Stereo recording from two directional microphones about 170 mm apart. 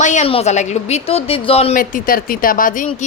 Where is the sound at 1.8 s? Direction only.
55° left (ahead or behind).